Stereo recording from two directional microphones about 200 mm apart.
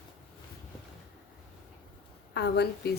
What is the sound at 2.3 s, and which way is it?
Speech, 55° left (ahead or behind).